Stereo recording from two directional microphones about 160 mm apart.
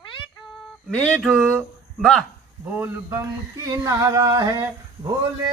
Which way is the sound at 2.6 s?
10° right (ahead or behind).